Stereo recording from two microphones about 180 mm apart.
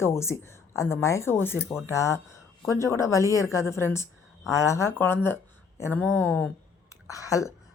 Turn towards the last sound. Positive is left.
turn(degrees=20)  # may be behind; listen again after turning